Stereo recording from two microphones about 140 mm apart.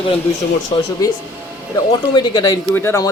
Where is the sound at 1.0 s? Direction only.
25° left (ahead or behind).